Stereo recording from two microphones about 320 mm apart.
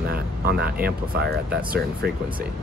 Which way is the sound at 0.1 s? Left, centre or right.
Right.